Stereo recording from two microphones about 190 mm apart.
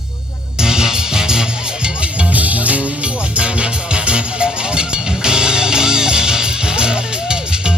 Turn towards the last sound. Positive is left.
turn(degrees=-5)  # may be behind; listen again after turning